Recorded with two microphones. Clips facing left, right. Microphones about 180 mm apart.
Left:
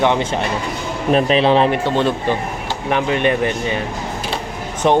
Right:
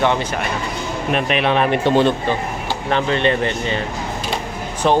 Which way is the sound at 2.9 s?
10° left (ahead or behind).